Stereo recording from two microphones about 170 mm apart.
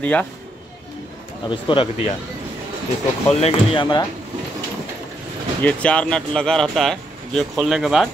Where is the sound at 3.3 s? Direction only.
35° left (ahead or behind).